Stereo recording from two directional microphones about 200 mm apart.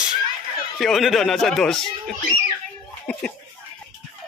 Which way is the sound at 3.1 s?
5° left (ahead or behind).